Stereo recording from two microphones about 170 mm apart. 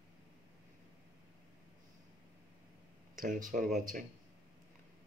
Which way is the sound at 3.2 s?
55° right (ahead or behind).